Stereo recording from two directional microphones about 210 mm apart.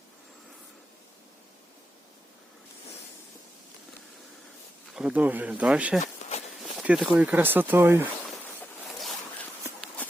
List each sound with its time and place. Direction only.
4.9 s speech: 5° right (ahead or behind)
6.2 s walk: 35° left (ahead or behind)
6.7 s speech: 5° right (ahead or behind)